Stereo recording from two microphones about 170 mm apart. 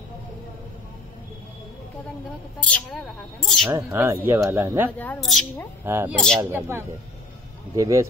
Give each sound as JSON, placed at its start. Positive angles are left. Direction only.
{"t": 2.6, "sound": "a woman's voice", "side_deg": 5}
{"t": 3.9, "sound": "speech", "side_deg": -15}
{"t": 4.9, "sound": "a woman's voice", "side_deg": 5}
{"t": 5.9, "sound": "speech", "side_deg": -15}
{"t": 6.1, "sound": "a woman's voice", "side_deg": 5}
{"t": 6.5, "sound": "speech", "side_deg": -15}